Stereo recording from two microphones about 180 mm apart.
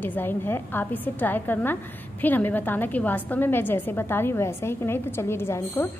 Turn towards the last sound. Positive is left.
turn(degrees=15)  # may be behind; listen again after turning